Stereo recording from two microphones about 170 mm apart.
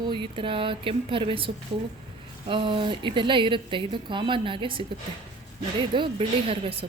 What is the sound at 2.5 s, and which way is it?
Speech, 30° right (ahead or behind).